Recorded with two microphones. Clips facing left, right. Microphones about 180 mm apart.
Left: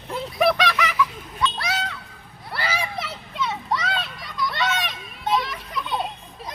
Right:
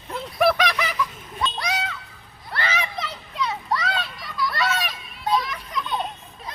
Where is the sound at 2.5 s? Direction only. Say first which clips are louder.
Even; 10° left (ahead or behind).